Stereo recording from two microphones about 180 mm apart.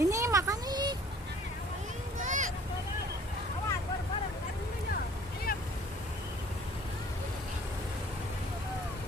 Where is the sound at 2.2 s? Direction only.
45° right (ahead or behind).